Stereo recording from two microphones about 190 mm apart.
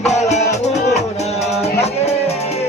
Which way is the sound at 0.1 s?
35° left (ahead or behind).